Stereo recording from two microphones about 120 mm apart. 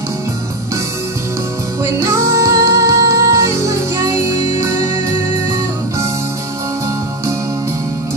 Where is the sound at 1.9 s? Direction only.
25° right (ahead or behind).